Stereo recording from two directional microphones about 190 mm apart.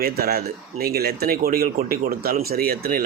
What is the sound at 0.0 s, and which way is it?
Speech, 55° right (ahead or behind).